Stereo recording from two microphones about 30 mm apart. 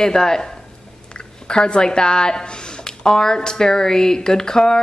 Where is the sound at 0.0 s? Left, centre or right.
Left.